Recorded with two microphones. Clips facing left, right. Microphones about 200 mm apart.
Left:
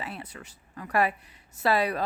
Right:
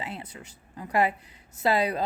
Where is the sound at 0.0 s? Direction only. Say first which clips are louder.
Right 1 dB; 20° right (ahead or behind).